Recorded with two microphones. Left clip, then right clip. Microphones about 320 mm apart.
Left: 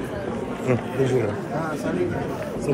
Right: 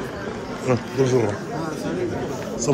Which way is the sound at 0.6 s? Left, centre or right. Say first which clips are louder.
Right 2 dB; centre.